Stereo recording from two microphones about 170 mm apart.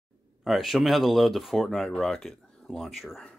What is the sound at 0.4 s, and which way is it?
Speech, centre (ahead or behind).